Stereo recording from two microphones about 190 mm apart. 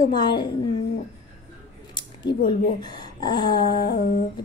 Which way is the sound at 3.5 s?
55° left (ahead or behind).